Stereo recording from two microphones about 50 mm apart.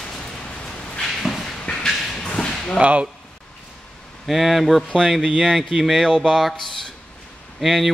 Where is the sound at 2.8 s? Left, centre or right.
Right.